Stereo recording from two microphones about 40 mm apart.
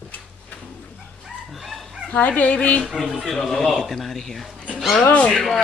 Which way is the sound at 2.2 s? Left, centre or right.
Left.